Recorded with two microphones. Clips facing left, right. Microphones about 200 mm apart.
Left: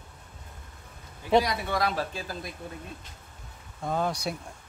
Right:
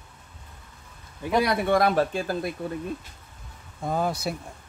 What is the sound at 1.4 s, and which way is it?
Speech, 55° right (ahead or behind).